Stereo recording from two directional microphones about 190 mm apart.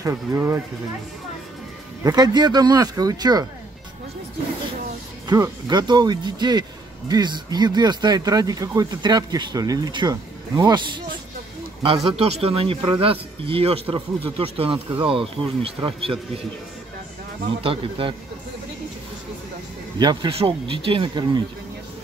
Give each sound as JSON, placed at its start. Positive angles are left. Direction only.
{"t": 0.0, "sound": "speech", "side_deg": -15}
{"t": 2.0, "sound": "a man's voice", "side_deg": -20}
{"t": 5.3, "sound": "a man's voice", "side_deg": -20}
{"t": 17.6, "sound": "a man's voice", "side_deg": -30}
{"t": 20.0, "sound": "a man's voice", "side_deg": -25}